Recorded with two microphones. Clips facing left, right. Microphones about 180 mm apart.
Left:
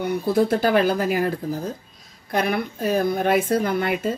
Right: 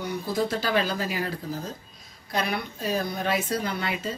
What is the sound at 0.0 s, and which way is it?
Speech, 60° left (ahead or behind).